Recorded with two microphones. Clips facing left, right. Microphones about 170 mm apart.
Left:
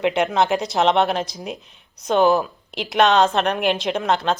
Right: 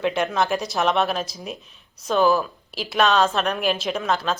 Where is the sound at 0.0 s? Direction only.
20° left (ahead or behind).